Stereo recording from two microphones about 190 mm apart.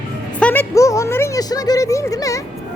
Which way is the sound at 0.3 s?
10° left (ahead or behind).